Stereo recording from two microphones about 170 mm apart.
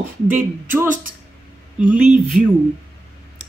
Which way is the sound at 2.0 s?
50° right (ahead or behind).